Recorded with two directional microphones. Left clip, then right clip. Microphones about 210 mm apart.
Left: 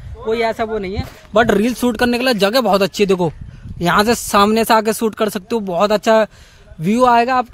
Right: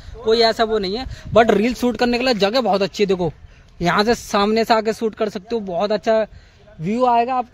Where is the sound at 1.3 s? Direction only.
10° left (ahead or behind).